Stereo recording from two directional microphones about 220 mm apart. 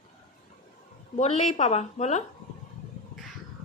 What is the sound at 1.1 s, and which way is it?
A woman's voice, 30° left (ahead or behind).